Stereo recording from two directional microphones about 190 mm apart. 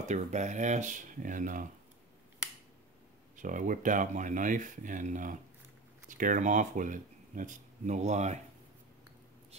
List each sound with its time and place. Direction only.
0.1 s speech: 40° right (ahead or behind)
3.3 s speech: 45° right (ahead or behind)